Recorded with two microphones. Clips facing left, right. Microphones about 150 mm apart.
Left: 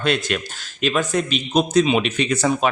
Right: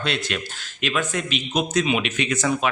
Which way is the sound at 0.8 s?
35° left (ahead or behind).